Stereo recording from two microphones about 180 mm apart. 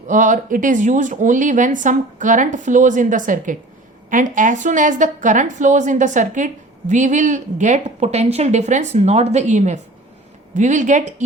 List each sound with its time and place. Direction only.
0.1 s a woman's voice: 45° right (ahead or behind)